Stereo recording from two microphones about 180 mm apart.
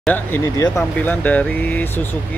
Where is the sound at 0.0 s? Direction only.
10° left (ahead or behind).